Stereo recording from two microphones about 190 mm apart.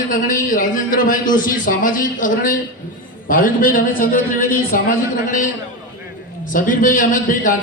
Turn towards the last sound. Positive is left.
turn(degrees=45)  # may be behind; listen again after turning